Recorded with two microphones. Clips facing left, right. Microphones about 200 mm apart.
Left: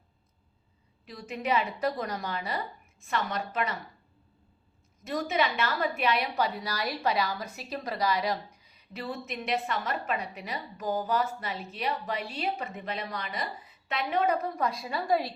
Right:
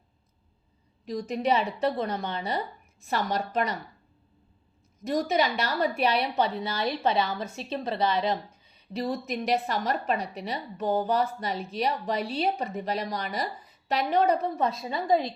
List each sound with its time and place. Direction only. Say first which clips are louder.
1.0 s a woman's voice: right 6 dB; 35° right (ahead or behind)
5.1 s a woman's voice: right 3 dB; 35° right (ahead or behind); by 15.3 s 20° right (ahead or behind)